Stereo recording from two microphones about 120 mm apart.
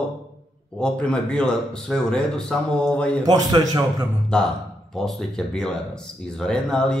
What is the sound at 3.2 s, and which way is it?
Speech, 35° right (ahead or behind).